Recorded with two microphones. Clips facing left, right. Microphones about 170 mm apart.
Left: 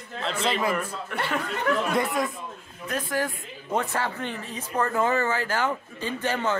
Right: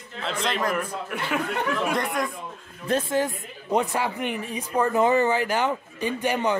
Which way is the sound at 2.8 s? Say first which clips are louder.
Right 4 dB; 25° right (ahead or behind).